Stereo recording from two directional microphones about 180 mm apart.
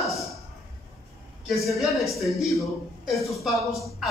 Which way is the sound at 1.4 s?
Centre (ahead or behind).